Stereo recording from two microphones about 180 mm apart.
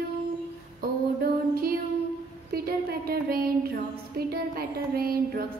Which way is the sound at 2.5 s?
60° right (ahead or behind).